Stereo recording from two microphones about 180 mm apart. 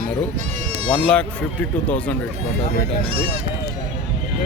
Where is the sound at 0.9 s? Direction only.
5° left (ahead or behind).